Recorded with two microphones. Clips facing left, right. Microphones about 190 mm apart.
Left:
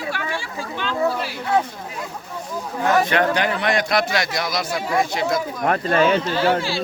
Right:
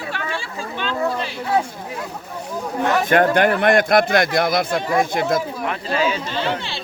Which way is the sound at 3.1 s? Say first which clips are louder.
Right 4 dB; 50° right (ahead or behind).